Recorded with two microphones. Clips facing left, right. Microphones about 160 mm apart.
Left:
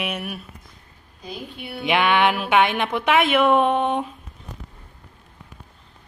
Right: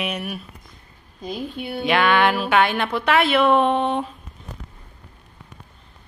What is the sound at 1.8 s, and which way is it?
A woman's voice, 15° left (ahead or behind).